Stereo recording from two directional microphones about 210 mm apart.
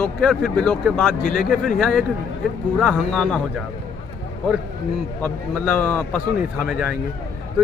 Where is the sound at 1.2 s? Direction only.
40° left (ahead or behind).